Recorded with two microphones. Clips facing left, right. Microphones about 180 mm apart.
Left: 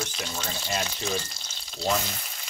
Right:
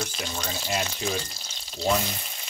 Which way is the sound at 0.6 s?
5° right (ahead or behind).